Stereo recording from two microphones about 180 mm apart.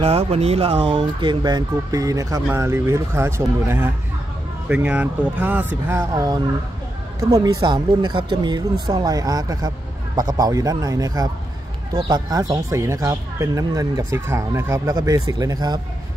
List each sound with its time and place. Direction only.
0.0 s speech: 30° right (ahead or behind)